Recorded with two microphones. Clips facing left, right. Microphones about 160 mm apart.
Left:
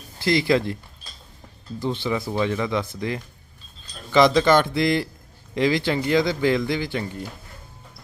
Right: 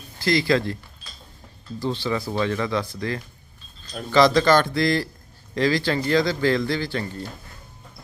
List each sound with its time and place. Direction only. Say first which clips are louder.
0.2 s speech: left 1 dB; 25° left (ahead or behind)
1.8 s speech: even; 20° left (ahead or behind)